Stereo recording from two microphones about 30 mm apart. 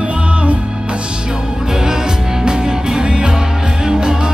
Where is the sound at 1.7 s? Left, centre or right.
Centre.